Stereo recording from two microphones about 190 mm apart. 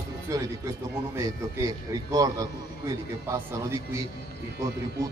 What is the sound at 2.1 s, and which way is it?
A man's voice, 20° right (ahead or behind).